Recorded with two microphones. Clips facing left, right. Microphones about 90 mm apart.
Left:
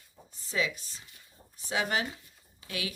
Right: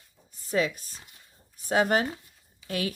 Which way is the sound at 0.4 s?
50° right (ahead or behind).